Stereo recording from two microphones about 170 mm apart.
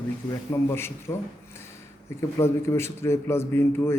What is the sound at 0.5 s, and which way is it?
A man's voice, 15° left (ahead or behind).